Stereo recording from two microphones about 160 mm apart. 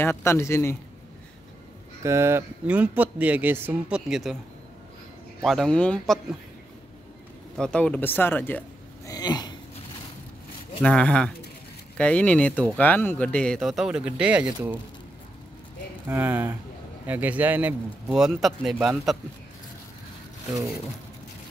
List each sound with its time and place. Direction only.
0.0 s speech: 15° left (ahead or behind)
2.0 s speech: 15° right (ahead or behind)
4.1 s a man's voice: centre (ahead or behind)
5.4 s a man's voice: centre (ahead or behind)
7.5 s speech: 5° left (ahead or behind)
9.1 s a sound: 25° left (ahead or behind)
10.8 s a man's voice: 5° left (ahead or behind); by 14.8 s 10° right (ahead or behind)
16.1 s a man's voice: 10° right (ahead or behind)